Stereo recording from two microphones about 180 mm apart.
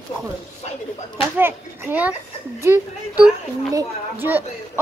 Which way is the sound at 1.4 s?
10° right (ahead or behind).